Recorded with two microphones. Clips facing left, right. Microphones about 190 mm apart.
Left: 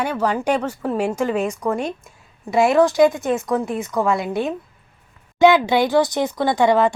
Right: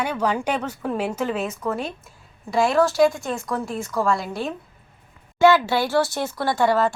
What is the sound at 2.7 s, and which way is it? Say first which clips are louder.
Speech: left 4 dB; 15° left (ahead or behind).